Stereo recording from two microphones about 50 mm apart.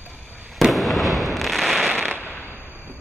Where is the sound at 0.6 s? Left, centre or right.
Centre.